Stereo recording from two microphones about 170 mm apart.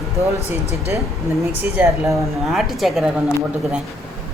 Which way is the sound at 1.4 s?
15° right (ahead or behind).